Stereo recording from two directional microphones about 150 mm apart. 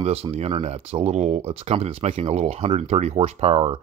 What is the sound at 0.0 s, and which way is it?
Speech, 40° right (ahead or behind).